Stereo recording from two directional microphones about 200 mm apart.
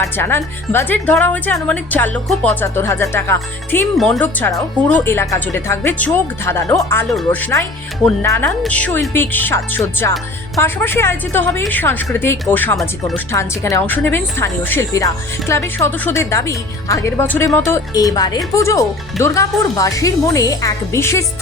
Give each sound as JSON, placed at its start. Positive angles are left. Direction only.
{"t": 0.0, "sound": "a woman's voice", "side_deg": 10}